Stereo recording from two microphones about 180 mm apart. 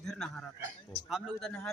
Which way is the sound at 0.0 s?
5° left (ahead or behind).